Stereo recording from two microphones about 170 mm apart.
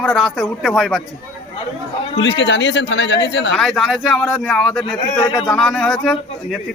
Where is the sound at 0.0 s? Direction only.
5° left (ahead or behind).